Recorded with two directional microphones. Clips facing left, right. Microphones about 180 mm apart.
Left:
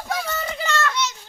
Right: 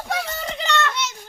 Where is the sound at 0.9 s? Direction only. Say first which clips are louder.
Left 2 dB; 50° right (ahead or behind).